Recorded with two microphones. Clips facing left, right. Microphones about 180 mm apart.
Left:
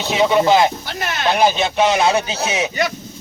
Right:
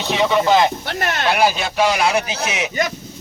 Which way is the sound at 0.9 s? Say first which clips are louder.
Right 3 dB; 60° right (ahead or behind).